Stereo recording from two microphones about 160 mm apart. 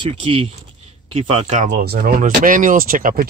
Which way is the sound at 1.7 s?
75° right (ahead or behind).